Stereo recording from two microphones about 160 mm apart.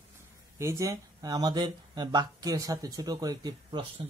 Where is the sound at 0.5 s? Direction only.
20° right (ahead or behind).